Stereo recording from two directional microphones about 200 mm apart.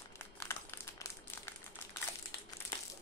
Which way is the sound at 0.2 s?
10° left (ahead or behind).